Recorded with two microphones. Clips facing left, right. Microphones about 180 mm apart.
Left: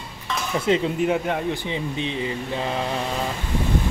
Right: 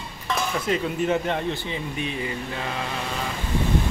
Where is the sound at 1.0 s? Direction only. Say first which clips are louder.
Left 1 dB; 10° left (ahead or behind).